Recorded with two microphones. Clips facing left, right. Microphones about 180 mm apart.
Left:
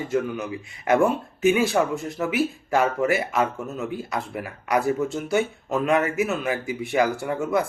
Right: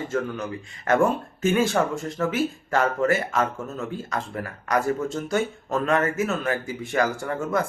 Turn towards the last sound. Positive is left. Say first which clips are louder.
# left 2 dB
turn(degrees=15)  # may be behind; listen again after turning